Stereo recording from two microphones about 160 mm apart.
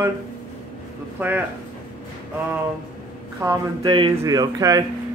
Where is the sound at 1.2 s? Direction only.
10° right (ahead or behind).